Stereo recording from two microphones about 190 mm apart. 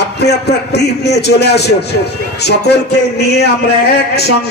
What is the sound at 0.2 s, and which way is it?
Speech, 60° left (ahead or behind).